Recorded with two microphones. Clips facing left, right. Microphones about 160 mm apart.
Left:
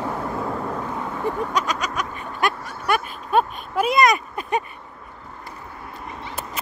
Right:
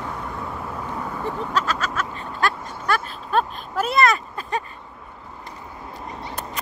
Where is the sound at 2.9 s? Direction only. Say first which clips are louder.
Left 2 dB; 10° left (ahead or behind).